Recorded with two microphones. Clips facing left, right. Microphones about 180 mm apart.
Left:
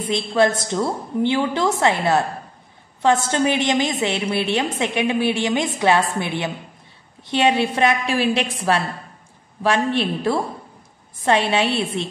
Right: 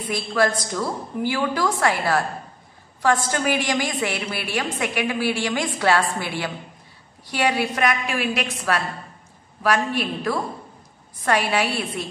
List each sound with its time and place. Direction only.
0.1 s a woman's voice: 25° left (ahead or behind)